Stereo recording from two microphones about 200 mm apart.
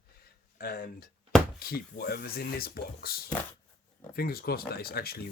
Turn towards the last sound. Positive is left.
turn(degrees=50)  # may be behind; listen again after turning